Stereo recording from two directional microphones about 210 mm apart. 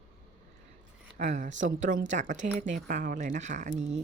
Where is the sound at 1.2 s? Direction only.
35° right (ahead or behind).